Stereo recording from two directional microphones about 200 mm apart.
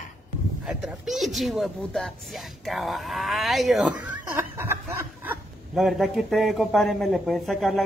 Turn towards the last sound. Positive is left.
turn(degrees=0)  # may be behind; listen again after turning